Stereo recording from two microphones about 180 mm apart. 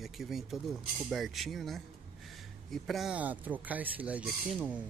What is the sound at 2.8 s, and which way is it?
Speech, centre (ahead or behind).